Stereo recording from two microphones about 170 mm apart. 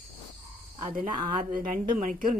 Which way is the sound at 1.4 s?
50° right (ahead or behind).